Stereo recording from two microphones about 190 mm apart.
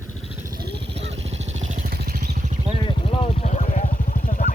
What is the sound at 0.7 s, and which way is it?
Vehicle, 60° right (ahead or behind).